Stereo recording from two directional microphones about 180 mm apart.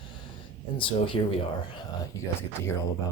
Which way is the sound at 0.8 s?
30° left (ahead or behind).